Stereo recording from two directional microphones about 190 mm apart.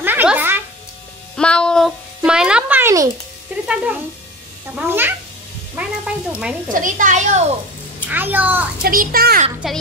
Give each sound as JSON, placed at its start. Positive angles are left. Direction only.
{"t": 0.0, "sound": "music", "side_deg": -10}
{"t": 1.3, "sound": "a sound", "side_deg": 5}
{"t": 3.6, "sound": "a child's voice", "side_deg": -5}
{"t": 5.8, "sound": "music", "side_deg": -5}
{"t": 6.7, "sound": "a woman's voice", "side_deg": -45}
{"t": 8.1, "sound": "a child's voice", "side_deg": -10}
{"t": 8.8, "sound": "a child's voice", "side_deg": -50}
{"t": 9.6, "sound": "speech", "side_deg": 0}